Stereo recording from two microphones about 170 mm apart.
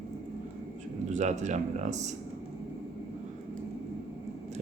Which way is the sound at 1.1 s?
45° right (ahead or behind).